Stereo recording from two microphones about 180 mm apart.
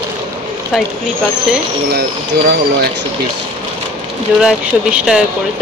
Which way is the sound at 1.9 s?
60° right (ahead or behind).